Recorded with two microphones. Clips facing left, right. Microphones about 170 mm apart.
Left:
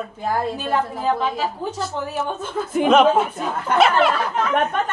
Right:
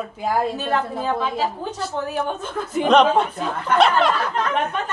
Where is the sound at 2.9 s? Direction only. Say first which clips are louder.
Even; 5° left (ahead or behind).